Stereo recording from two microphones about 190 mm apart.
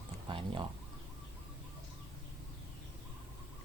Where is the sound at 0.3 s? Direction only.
25° right (ahead or behind).